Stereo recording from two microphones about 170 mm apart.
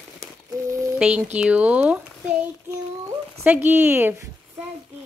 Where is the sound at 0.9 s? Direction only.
5° right (ahead or behind).